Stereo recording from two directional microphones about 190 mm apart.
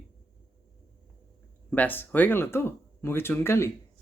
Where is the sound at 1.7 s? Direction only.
10° left (ahead or behind).